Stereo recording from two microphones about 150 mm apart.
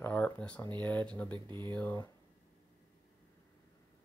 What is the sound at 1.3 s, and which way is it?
Speech, 30° right (ahead or behind).